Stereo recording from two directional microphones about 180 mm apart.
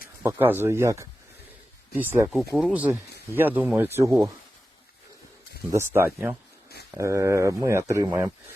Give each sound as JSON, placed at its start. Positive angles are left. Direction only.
{"t": 0.2, "sound": "speech", "side_deg": -15}
{"t": 2.3, "sound": "speech", "side_deg": 0}
{"t": 5.7, "sound": "speech", "side_deg": -15}